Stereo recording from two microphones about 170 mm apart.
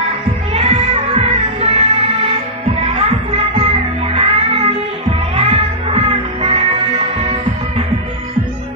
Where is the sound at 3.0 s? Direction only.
35° right (ahead or behind).